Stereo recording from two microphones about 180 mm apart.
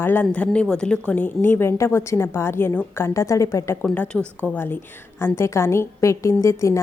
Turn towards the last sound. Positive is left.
turn(degrees=15)  # may be behind; listen again after turning